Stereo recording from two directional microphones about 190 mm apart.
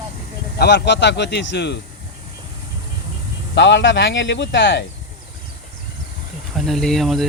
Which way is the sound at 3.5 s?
70° left (ahead or behind).